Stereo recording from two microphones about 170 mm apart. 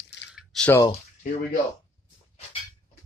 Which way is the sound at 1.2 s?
50° left (ahead or behind).